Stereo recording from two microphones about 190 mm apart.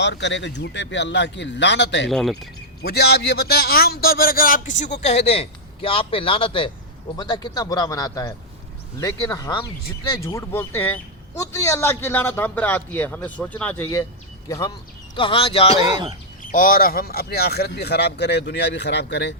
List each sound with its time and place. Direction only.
0.0 s speech: 65° left (ahead or behind)
2.0 s speech: centre (ahead or behind)
2.8 s a man's voice: 60° left (ahead or behind); by 13.8 s 5° left (ahead or behind)
14.4 s a man's voice: 20° left (ahead or behind)
16.4 s speech: 45° left (ahead or behind); by 19.3 s 65° left (ahead or behind)